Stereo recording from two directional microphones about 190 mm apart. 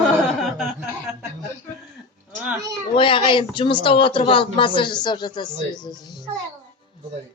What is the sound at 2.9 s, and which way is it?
Speech, 25° left (ahead or behind).